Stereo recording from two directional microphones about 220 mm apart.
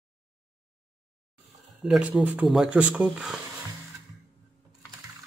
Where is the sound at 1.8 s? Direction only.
5° right (ahead or behind).